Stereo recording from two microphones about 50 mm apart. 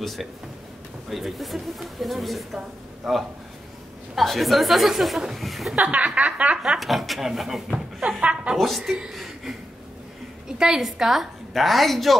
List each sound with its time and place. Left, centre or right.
0.0 s speech: centre
5.8 s speech: right
6.8 s speech: centre
8.2 s speech: right
8.5 s speech: centre
9.1 s a sound: centre
10.6 s speech: centre